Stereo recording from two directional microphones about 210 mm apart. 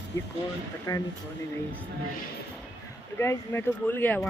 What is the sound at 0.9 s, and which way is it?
Speech, 15° left (ahead or behind).